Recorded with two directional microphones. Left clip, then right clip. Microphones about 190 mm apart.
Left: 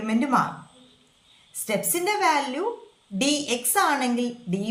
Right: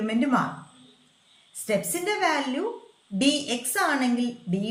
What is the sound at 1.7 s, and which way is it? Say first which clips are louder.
A woman's voice: left 1 dB; 25° left (ahead or behind).